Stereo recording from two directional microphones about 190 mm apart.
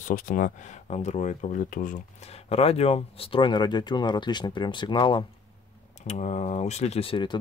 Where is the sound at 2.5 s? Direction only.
30° left (ahead or behind).